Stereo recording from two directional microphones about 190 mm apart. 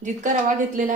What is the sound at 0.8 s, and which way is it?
Speech, 40° right (ahead or behind).